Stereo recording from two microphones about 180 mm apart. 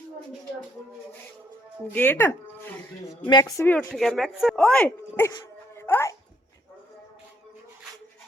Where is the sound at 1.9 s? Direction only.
10° left (ahead or behind).